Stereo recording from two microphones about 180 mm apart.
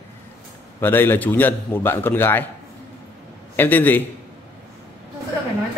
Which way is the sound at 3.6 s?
10° left (ahead or behind).